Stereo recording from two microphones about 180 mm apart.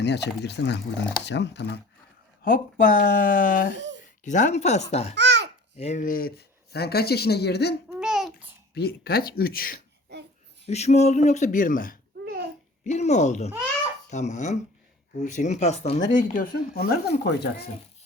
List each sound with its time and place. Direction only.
0.0 s speech: 70° left (ahead or behind)
2.4 s speech: 50° left (ahead or behind)
3.8 s a sound: 90° right
4.2 s speech: 45° left (ahead or behind)
5.1 s babbling: 75° right (ahead or behind)
5.7 s speech: 35° left (ahead or behind); by 7.8 s 65° left (ahead or behind)
7.9 s babbling: 5° right (ahead or behind)
8.7 s speech: 60° left (ahead or behind)
10.7 s speech: 35° left (ahead or behind); by 17.7 s 65° left (ahead or behind)